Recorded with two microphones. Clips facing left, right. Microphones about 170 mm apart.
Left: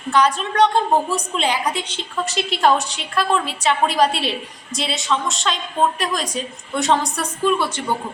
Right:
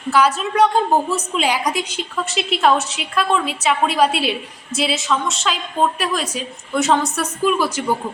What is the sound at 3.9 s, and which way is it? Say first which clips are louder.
A woman's voice: right 1 dB; 5° right (ahead or behind).